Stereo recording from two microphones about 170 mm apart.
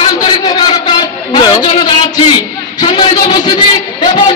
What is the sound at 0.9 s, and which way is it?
Music, 25° left (ahead or behind).